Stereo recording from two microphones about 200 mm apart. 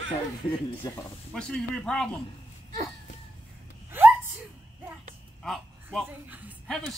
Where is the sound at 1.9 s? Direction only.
5° left (ahead or behind).